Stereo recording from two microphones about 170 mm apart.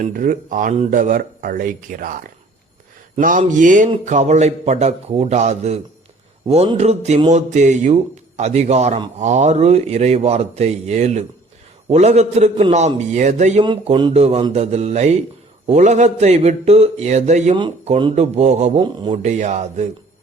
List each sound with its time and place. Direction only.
0.0 s speech: 50° right (ahead or behind)
3.2 s speech: 50° right (ahead or behind)
13.6 s speech: 30° right (ahead or behind)
17.5 s speech: 30° right (ahead or behind)
18.1 s speech: 40° right (ahead or behind)